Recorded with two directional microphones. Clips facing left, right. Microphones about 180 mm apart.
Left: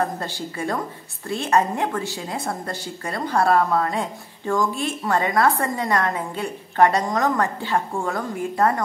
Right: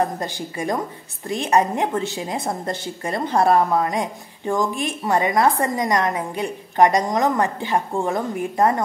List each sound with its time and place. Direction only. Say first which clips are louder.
0.2 s a woman's voice: right 1 dB; 15° right (ahead or behind)